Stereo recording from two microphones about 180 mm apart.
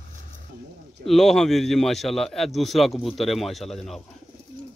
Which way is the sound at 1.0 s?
Centre (ahead or behind).